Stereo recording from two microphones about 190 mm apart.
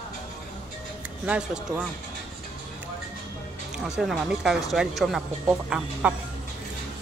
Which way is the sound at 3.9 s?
Centre (ahead or behind).